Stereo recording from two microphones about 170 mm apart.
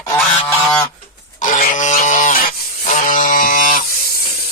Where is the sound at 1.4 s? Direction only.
50° left (ahead or behind).